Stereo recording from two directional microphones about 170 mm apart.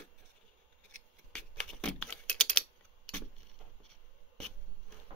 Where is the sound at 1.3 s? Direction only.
5° left (ahead or behind).